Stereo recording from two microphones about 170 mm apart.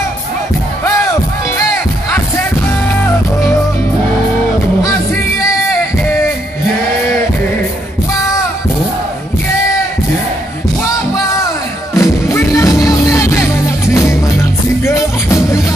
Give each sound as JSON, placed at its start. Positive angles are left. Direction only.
{"t": 11.9, "sound": "music", "side_deg": 15}